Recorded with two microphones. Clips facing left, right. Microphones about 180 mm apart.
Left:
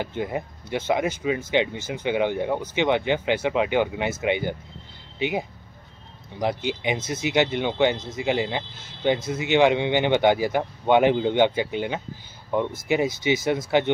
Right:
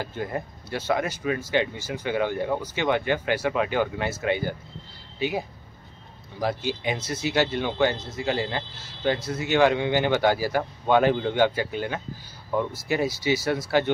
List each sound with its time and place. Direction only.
0.0 s speech: 20° left (ahead or behind)
6.4 s speech: 20° left (ahead or behind)